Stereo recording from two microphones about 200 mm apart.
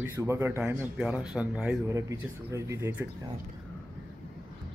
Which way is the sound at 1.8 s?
15° right (ahead or behind).